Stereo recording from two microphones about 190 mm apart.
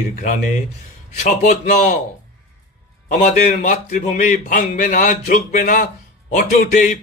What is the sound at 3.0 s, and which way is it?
A man's voice, 45° left (ahead or behind).